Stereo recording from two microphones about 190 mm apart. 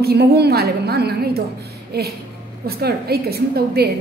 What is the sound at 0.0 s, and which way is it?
A woman's voice, 55° right (ahead or behind).